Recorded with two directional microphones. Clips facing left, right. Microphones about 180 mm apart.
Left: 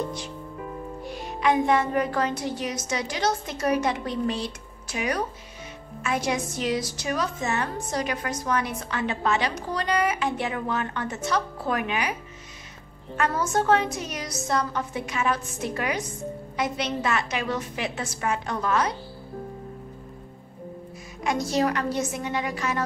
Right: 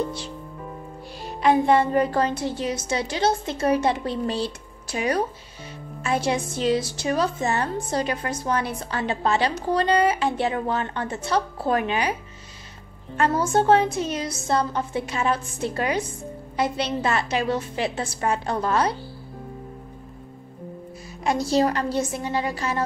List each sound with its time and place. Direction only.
1.0 s a woman's voice: 30° right (ahead or behind)
13.2 s a woman's voice: 30° right (ahead or behind)
21.2 s a woman's voice: 30° right (ahead or behind)